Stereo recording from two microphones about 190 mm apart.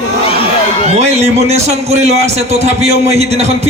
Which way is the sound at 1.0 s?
35° right (ahead or behind).